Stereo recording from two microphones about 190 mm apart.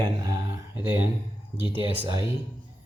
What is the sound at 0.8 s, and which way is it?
Speech, 10° right (ahead or behind).